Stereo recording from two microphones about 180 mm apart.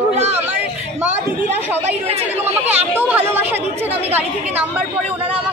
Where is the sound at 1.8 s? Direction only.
35° right (ahead or behind).